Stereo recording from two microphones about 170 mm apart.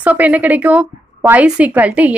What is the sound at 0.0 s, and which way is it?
A woman's voice, 10° right (ahead or behind).